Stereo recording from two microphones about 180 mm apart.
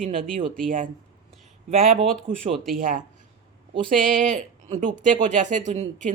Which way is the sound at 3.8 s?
45° right (ahead or behind).